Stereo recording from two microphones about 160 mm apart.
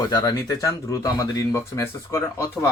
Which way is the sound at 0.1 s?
25° left (ahead or behind).